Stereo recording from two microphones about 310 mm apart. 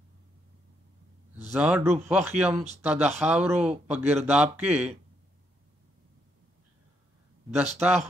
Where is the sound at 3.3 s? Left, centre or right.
Centre.